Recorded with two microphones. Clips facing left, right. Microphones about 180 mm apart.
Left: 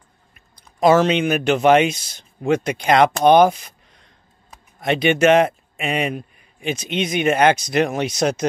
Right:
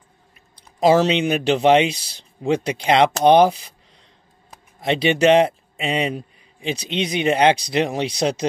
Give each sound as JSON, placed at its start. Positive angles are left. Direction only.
{"t": 0.7, "sound": "a man's voice", "side_deg": -25}
{"t": 4.7, "sound": "a man's voice", "side_deg": -30}